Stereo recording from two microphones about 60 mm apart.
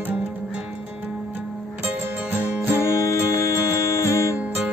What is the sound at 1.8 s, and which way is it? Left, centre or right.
Music, right.